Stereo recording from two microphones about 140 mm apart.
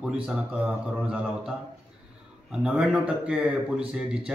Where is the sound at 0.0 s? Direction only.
5° right (ahead or behind).